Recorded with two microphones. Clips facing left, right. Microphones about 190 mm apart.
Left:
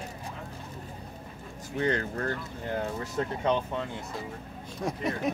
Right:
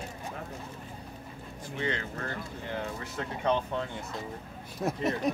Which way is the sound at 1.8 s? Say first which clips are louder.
Left 5 dB; 45° left (ahead or behind).